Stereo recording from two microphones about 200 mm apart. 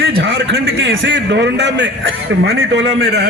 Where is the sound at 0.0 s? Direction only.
60° right (ahead or behind).